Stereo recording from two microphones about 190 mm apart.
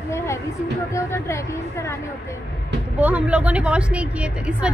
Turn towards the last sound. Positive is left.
turn(degrees=-5)  # may be behind; listen again after turning